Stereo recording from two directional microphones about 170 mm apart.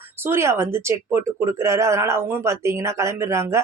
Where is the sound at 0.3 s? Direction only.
15° right (ahead or behind).